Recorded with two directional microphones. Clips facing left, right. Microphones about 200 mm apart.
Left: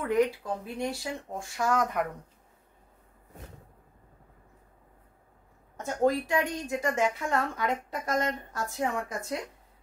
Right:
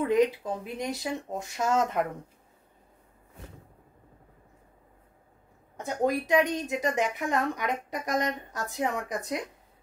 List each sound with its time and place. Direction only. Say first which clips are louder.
0.0 s speech: right 2 dB; 20° right (ahead or behind)
5.8 s a woman's voice: left 1 dB; 15° right (ahead or behind)